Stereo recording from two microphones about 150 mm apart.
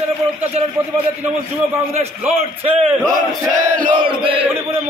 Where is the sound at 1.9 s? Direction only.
40° right (ahead or behind).